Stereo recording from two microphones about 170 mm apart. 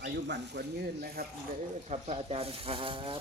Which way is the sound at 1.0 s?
60° right (ahead or behind).